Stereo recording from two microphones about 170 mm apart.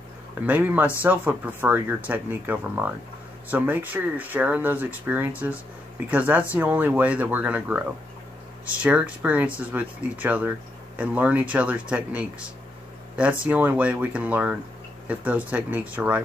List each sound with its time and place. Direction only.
0.5 s speech: 10° right (ahead or behind)